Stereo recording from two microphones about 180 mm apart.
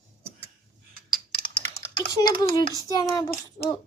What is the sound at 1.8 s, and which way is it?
Typing, 20° left (ahead or behind).